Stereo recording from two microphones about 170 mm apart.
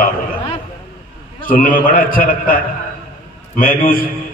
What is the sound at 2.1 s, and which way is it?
A man's voice, 55° left (ahead or behind).